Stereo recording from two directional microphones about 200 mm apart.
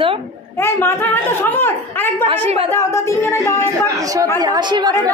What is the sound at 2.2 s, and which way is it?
Speech, 30° right (ahead or behind).